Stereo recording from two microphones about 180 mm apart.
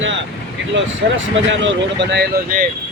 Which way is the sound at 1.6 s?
80° right.